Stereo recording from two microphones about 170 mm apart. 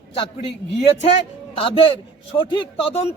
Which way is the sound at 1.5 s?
35° left (ahead or behind).